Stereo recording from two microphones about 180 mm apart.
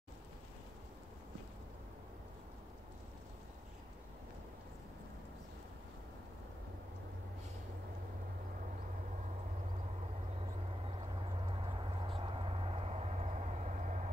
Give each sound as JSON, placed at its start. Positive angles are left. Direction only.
{"t": 11.4, "sound": "vehicle", "side_deg": -30}